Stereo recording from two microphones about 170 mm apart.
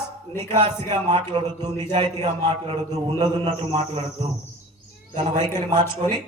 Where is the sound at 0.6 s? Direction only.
25° right (ahead or behind).